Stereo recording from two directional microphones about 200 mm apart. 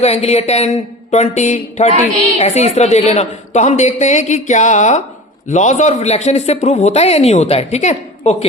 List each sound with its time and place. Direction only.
0.0 s a man's voice: 30° left (ahead or behind)